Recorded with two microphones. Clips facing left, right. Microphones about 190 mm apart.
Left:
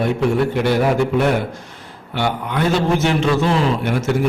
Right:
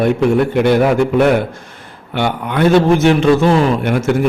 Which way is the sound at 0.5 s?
55° right (ahead or behind).